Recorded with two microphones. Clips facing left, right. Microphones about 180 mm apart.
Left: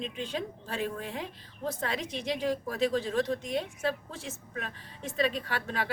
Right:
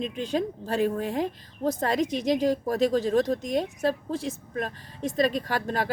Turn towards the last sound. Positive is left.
turn(degrees=-40)  # may be behind; listen again after turning